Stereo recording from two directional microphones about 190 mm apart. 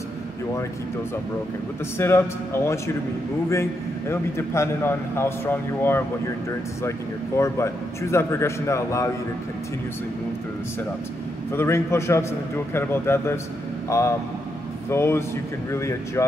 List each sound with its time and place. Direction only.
2.0 s speech: 15° left (ahead or behind)
4.1 s speech: 15° left (ahead or behind)
7.3 s speech: 15° left (ahead or behind)
11.5 s speech: 15° left (ahead or behind)